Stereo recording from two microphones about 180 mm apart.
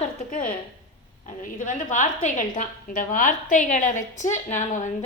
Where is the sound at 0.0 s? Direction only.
45° left (ahead or behind).